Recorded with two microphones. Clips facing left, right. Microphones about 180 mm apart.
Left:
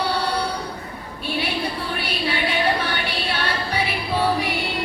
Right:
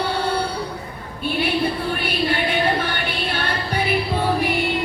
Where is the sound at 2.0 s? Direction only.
50° right (ahead or behind).